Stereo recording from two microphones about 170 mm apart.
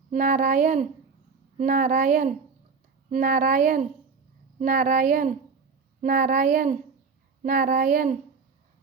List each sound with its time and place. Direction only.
0.1 s speech: 50° right (ahead or behind)